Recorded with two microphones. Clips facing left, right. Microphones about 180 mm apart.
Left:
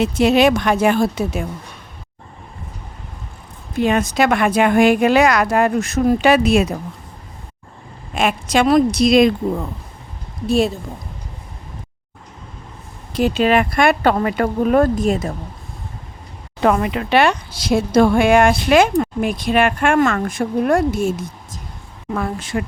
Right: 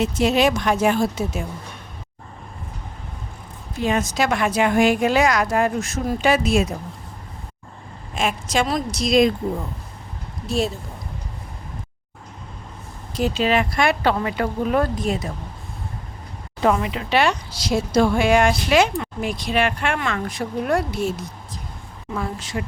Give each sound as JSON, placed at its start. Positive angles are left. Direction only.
{"t": 0.0, "sound": "a woman's voice", "side_deg": 65}
{"t": 3.8, "sound": "a woman's voice", "side_deg": 60}
{"t": 8.1, "sound": "a woman's voice", "side_deg": 65}
{"t": 10.4, "sound": "a woman's voice", "side_deg": 60}
{"t": 13.1, "sound": "speech", "side_deg": 60}
{"t": 16.6, "sound": "speech", "side_deg": 55}